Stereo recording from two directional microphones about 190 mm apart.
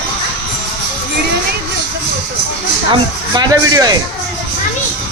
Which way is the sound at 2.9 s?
20° right (ahead or behind).